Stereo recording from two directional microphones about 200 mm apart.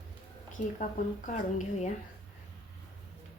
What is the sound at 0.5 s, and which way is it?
A woman's voice, 40° left (ahead or behind).